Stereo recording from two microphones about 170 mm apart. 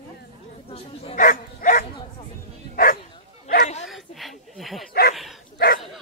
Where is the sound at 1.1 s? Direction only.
55° left (ahead or behind).